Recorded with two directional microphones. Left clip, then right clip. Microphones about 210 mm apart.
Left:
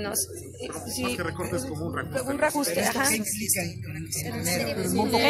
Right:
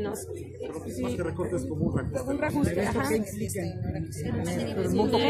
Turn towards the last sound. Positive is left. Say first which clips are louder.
# even
turn(degrees=35)  # may be behind; listen again after turning